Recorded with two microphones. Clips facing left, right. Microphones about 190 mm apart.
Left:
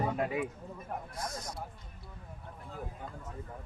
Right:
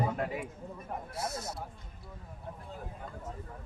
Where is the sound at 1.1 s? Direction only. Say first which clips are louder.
Right 3 dB; 5° right (ahead or behind).